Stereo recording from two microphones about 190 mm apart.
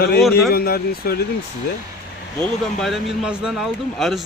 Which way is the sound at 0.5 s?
55° left (ahead or behind).